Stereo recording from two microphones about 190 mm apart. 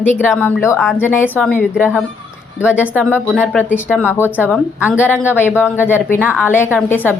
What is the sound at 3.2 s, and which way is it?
Speech, centre (ahead or behind).